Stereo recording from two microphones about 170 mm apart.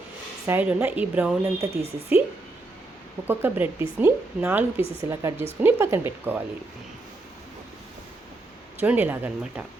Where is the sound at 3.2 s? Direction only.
10° right (ahead or behind).